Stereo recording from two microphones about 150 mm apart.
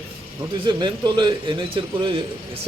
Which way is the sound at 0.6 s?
30° right (ahead or behind).